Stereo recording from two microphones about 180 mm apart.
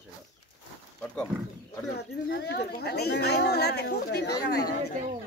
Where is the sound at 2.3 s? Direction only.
65° left (ahead or behind).